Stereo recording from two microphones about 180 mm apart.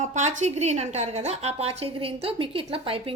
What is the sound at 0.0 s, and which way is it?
A woman's voice, 40° right (ahead or behind).